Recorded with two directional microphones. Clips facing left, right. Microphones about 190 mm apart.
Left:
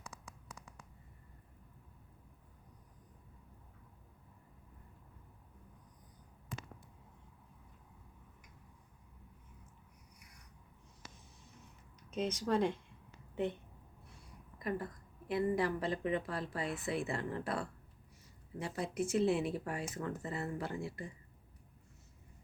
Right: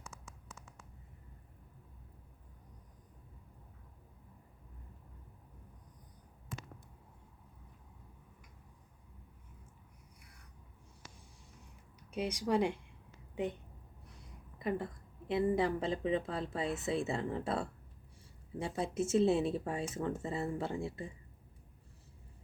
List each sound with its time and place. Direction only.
12.1 s a woman's voice: 10° right (ahead or behind)
15.3 s speech: 25° right (ahead or behind)